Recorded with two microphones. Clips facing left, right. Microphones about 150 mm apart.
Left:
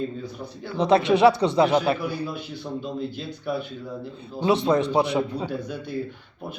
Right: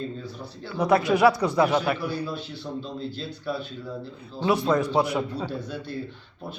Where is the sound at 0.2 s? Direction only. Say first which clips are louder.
Left 3 dB; 20° left (ahead or behind).